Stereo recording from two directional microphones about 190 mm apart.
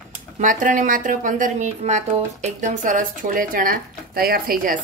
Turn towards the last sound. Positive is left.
turn(degrees=-50)  # may be behind; listen again after turning